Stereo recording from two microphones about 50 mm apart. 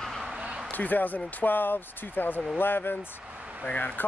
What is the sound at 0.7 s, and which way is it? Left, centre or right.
Speech, left.